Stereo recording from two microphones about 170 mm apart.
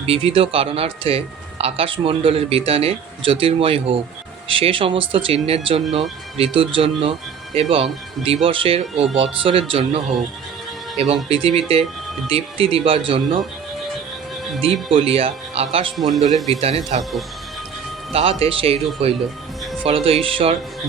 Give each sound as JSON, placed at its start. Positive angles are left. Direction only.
{"t": 0.0, "sound": "speech", "side_deg": -35}
{"t": 14.6, "sound": "speech", "side_deg": -35}
{"t": 17.0, "sound": "speech", "side_deg": 0}
{"t": 18.1, "sound": "speech", "side_deg": -35}